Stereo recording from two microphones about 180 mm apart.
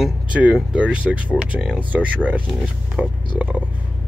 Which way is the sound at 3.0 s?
5° right (ahead or behind).